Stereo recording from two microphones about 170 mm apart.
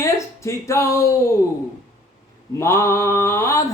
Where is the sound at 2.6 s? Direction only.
15° left (ahead or behind).